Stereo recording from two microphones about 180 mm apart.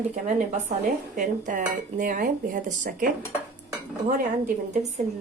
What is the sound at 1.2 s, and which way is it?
Dishes, 45° right (ahead or behind).